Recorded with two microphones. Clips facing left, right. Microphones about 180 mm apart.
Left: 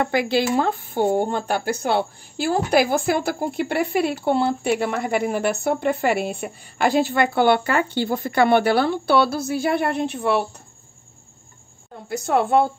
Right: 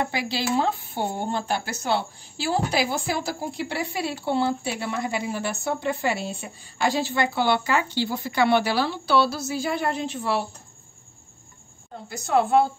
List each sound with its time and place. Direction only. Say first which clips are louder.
0.0 s speech: left 7 dB; 55° left (ahead or behind)
12.3 s speech: left 1 dB; 55° left (ahead or behind)